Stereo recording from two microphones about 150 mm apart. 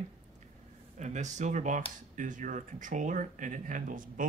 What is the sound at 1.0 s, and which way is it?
Speech, 50° right (ahead or behind).